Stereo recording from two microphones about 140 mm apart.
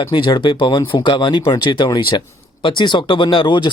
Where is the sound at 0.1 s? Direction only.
35° left (ahead or behind).